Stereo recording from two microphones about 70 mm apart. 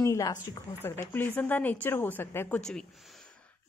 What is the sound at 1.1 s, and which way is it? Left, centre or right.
Speech, left.